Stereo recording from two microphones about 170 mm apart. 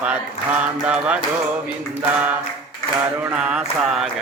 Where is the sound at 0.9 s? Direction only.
5° right (ahead or behind).